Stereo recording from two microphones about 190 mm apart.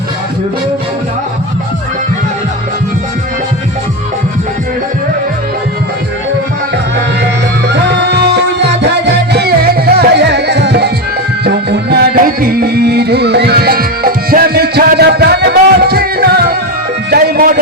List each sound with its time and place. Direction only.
7.7 s music: 65° right (ahead or behind)